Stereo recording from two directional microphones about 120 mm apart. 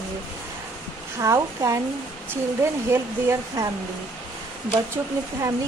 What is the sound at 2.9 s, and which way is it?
Speech, 20° right (ahead or behind).